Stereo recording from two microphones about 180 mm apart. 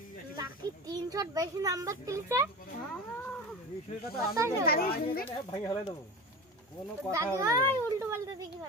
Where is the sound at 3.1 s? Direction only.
10° left (ahead or behind).